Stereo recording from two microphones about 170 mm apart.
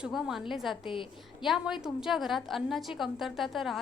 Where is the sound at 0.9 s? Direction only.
30° left (ahead or behind).